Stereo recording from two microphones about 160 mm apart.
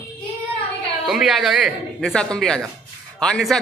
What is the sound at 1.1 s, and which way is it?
Speech, centre (ahead or behind).